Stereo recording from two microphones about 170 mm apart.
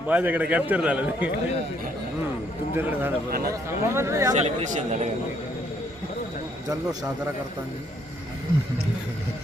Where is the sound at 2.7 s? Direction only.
10° right (ahead or behind).